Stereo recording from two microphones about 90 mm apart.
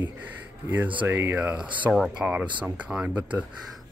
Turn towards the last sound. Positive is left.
turn(degrees=-15)  # may be behind; listen again after turning